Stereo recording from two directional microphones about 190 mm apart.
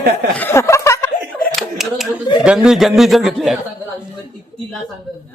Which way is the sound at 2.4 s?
5° right (ahead or behind).